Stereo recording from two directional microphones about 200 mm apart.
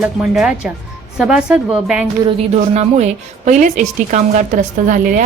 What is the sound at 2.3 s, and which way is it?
A woman's voice, 30° right (ahead or behind).